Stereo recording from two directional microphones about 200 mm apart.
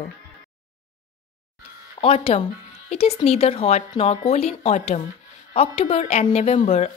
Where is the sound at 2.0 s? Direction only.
30° left (ahead or behind).